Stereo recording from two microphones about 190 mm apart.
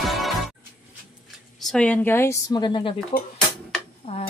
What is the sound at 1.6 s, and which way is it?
A woman's voice, 5° left (ahead or behind).